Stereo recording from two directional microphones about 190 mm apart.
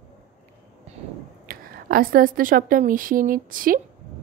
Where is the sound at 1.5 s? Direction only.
50° right (ahead or behind).